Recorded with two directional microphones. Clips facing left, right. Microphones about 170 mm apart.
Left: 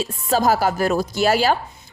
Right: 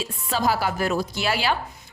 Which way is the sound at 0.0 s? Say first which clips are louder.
Left 5 dB; 40° left (ahead or behind).